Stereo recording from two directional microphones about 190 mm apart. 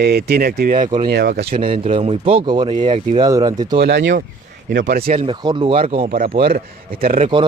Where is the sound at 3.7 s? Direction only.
65° right (ahead or behind).